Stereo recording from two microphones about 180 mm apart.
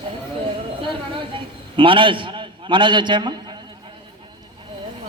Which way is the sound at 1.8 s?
30° right (ahead or behind).